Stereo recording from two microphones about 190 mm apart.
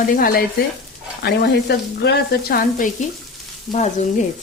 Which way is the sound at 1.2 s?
60° left (ahead or behind).